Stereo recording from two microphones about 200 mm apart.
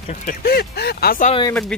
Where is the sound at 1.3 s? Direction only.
20° left (ahead or behind).